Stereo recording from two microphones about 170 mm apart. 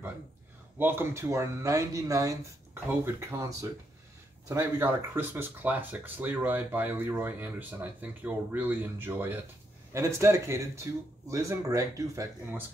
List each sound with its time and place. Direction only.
0.7 s speech: 15° right (ahead or behind)